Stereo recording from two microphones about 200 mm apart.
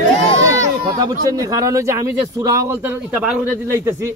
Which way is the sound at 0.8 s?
20° right (ahead or behind).